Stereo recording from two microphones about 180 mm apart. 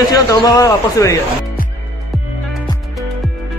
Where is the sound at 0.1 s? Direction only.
20° left (ahead or behind).